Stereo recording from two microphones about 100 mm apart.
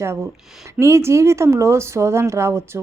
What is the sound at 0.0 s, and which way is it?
A woman's voice, 25° right (ahead or behind).